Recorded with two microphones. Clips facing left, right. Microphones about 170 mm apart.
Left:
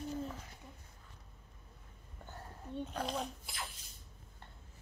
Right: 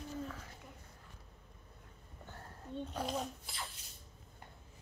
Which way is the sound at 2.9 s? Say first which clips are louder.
Even; 5° right (ahead or behind).